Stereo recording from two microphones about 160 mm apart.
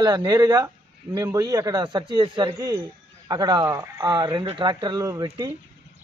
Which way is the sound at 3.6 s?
15° right (ahead or behind).